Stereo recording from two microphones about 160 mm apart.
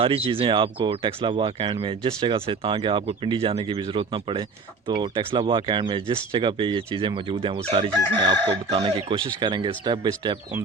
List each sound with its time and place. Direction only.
0.0 s speech: 35° right (ahead or behind)